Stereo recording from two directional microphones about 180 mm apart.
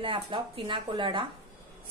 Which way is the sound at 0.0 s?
30° right (ahead or behind).